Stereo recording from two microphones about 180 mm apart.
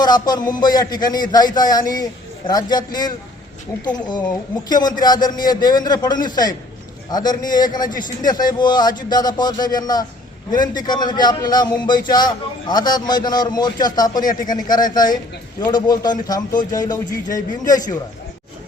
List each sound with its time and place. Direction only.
0.0 s a man's voice: 25° left (ahead or behind)
17.1 s a man's voice: 45° left (ahead or behind)
17.6 s a man's voice: 20° left (ahead or behind)